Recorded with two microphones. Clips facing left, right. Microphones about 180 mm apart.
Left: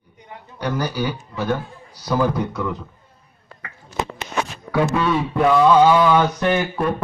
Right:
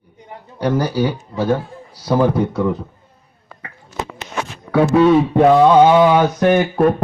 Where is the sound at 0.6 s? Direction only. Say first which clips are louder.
Right 6 dB; 30° right (ahead or behind).